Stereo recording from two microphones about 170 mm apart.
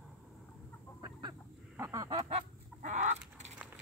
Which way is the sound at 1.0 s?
20° right (ahead or behind).